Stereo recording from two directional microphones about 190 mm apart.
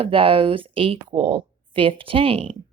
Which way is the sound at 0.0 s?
30° right (ahead or behind).